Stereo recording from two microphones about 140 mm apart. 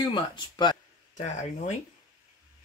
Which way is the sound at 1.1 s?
55° left (ahead or behind).